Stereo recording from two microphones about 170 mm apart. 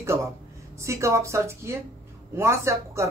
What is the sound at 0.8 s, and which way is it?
Speech, 15° right (ahead or behind).